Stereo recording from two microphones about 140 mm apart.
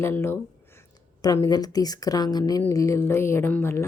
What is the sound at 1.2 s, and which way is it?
Speech, 30° left (ahead or behind).